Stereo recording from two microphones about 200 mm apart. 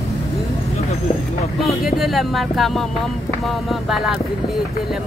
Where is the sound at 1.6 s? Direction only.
Centre (ahead or behind).